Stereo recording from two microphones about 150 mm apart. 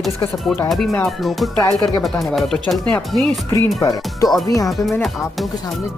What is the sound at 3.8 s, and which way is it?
Speech, 25° left (ahead or behind).